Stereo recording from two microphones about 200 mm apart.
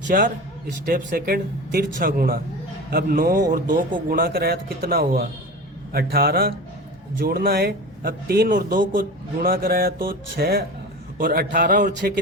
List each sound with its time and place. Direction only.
0.1 s a man's voice: 45° right (ahead or behind)